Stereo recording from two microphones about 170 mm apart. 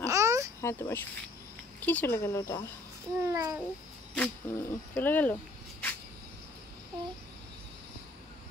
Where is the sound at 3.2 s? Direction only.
20° right (ahead or behind).